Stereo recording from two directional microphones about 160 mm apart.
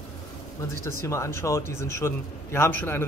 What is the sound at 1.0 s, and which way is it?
A man's voice, 20° left (ahead or behind).